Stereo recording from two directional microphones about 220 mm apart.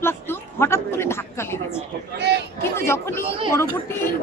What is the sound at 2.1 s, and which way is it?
Speech, 50° right (ahead or behind).